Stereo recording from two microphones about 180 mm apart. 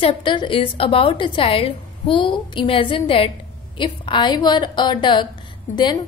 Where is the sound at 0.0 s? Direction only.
25° left (ahead or behind).